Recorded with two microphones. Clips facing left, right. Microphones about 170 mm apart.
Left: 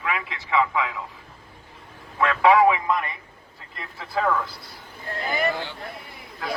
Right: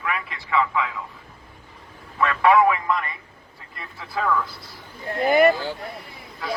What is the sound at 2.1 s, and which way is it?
A man's voice, 20° left (ahead or behind).